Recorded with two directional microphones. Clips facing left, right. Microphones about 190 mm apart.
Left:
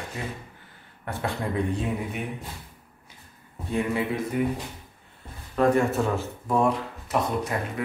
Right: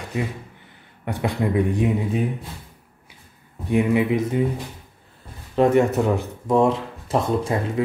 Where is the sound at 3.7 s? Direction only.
15° right (ahead or behind).